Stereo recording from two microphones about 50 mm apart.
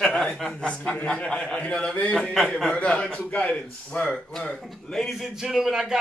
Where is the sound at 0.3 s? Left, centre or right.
Centre.